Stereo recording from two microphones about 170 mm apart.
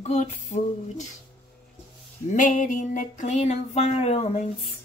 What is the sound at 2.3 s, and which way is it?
A woman's voice, 50° left (ahead or behind).